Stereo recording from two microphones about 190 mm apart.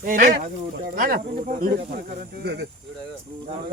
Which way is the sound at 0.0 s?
45° right (ahead or behind).